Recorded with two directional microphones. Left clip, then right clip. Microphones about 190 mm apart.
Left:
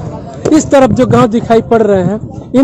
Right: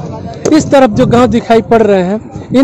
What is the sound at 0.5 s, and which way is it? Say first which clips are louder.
Speech: even; centre (ahead or behind).